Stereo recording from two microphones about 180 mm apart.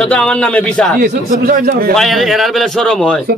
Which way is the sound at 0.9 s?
55° right (ahead or behind).